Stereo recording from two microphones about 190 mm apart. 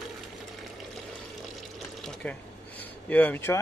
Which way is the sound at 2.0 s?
5° left (ahead or behind).